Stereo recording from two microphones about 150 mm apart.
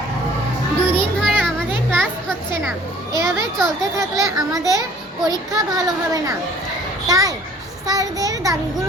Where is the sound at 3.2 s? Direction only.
20° right (ahead or behind).